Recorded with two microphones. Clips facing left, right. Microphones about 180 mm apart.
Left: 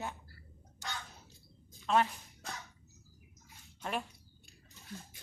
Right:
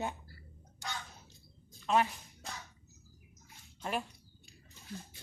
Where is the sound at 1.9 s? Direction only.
5° right (ahead or behind).